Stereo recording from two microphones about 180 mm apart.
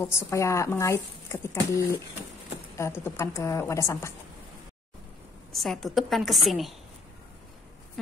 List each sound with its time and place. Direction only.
0.0 s speech: 15° left (ahead or behind)
5.5 s a woman's voice: centre (ahead or behind)